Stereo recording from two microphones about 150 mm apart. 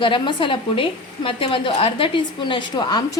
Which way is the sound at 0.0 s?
35° left (ahead or behind).